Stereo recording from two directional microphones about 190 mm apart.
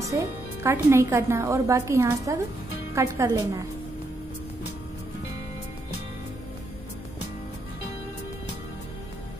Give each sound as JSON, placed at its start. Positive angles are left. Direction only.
{"t": 0.1, "sound": "a woman's voice", "side_deg": -15}